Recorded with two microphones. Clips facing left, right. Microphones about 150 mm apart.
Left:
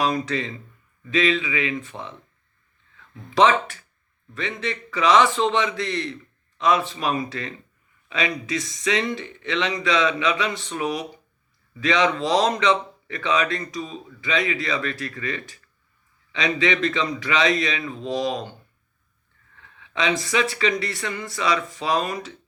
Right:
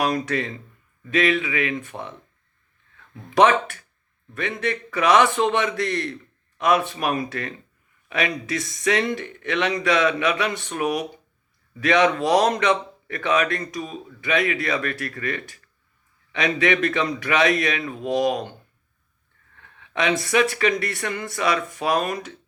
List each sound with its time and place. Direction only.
0.3 s speech: 55° right (ahead or behind)
3.2 s speech: 55° right (ahead or behind)
19.5 s speech: 55° right (ahead or behind)